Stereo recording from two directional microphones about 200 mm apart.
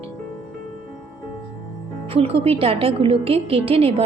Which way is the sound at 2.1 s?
30° right (ahead or behind).